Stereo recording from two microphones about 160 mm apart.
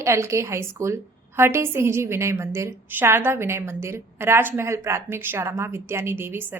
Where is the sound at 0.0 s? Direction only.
20° right (ahead or behind).